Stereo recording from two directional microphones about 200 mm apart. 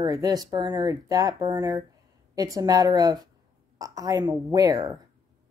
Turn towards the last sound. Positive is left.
turn(degrees=-20)  # may be behind; listen again after turning